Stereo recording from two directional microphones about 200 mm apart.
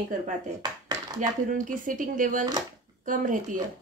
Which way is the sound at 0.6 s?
20° right (ahead or behind).